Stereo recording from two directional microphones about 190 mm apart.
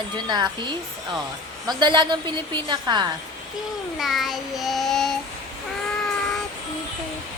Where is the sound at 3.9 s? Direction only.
Centre (ahead or behind).